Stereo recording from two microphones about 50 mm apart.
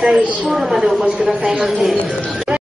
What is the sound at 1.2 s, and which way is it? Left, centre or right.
Speech, centre.